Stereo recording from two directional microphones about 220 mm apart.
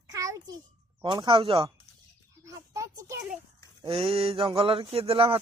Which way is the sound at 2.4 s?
15° right (ahead or behind).